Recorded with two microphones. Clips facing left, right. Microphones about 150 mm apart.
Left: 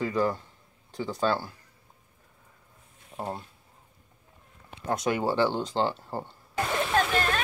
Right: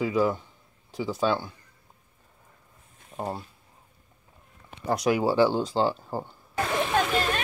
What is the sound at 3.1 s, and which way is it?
Speech, centre (ahead or behind).